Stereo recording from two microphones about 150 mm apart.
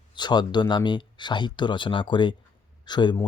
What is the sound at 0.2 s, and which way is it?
Speech, 30° left (ahead or behind).